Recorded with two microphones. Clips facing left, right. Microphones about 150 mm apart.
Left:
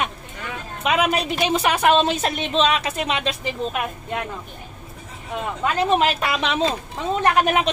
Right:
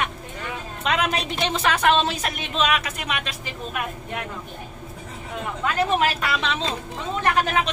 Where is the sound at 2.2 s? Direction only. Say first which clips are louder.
Left 4 dB; 25° left (ahead or behind).